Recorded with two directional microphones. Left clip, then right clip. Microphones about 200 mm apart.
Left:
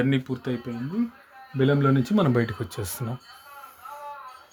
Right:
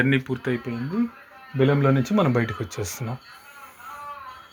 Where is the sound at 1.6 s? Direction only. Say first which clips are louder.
Right 2 dB; 15° left (ahead or behind).